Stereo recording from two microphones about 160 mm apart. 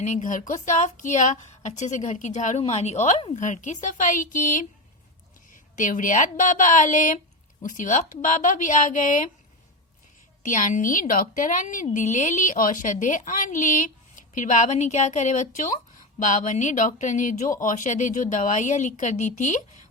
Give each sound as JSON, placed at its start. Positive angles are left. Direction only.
{"t": 0.0, "sound": "a woman's voice", "side_deg": 55}
{"t": 5.7, "sound": "a woman's voice", "side_deg": 55}
{"t": 10.4, "sound": "a woman's voice", "side_deg": 55}